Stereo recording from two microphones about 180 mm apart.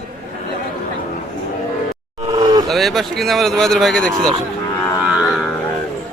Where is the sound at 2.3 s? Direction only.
25° right (ahead or behind).